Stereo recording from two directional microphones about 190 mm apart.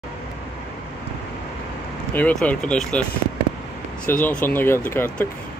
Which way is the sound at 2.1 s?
10° left (ahead or behind).